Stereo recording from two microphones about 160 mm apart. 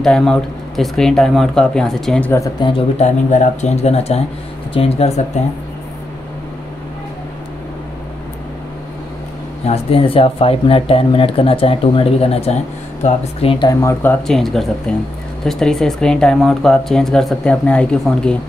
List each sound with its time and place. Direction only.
0.0 s speech: 5° left (ahead or behind)
2.4 s speech: 30° left (ahead or behind)
3.0 s speech: 45° left (ahead or behind)
9.7 s speech: 35° left (ahead or behind)
13.7 s speech: 15° left (ahead or behind)
14.2 s speech: centre (ahead or behind)